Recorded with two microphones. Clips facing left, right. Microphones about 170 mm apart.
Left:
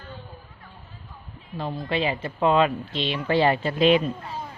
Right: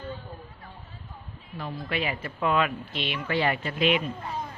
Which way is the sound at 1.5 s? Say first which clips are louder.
Left 5 dB; 30° left (ahead or behind).